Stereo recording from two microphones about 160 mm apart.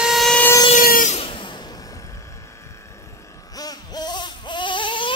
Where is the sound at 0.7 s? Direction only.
60° left (ahead or behind).